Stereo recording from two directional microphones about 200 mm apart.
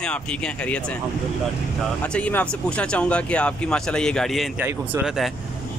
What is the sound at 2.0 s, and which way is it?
Speech, 5° left (ahead or behind).